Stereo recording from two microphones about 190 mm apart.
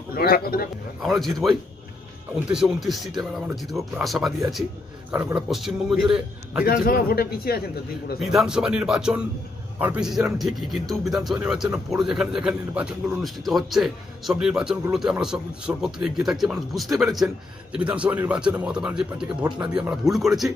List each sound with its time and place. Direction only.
0.1 s a man's voice: 50° left (ahead or behind)
1.0 s speech: centre (ahead or behind)
6.6 s a man's voice: 50° left (ahead or behind)
8.2 s speech: centre (ahead or behind)